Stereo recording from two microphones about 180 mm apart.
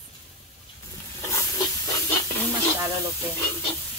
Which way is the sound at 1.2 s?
15° left (ahead or behind).